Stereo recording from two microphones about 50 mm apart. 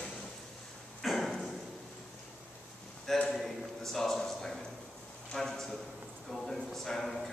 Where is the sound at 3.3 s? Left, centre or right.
Centre.